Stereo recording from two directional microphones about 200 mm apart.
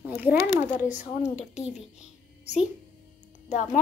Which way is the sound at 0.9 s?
35° left (ahead or behind).